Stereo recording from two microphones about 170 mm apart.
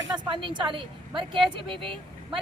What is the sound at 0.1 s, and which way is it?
A woman's voice, 30° right (ahead or behind).